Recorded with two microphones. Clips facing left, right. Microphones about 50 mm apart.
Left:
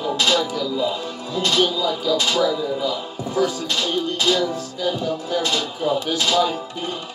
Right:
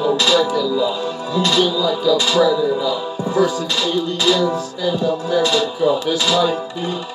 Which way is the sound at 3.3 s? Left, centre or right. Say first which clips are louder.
Right 4 dB; right.